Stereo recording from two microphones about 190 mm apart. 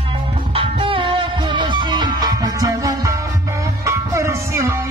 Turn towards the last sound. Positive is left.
turn(degrees=-15)  # may be behind; listen again after turning